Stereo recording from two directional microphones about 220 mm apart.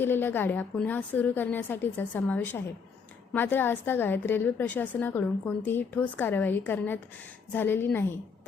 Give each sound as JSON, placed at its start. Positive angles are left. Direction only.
{"t": 0.0, "sound": "a woman's voice", "side_deg": 10}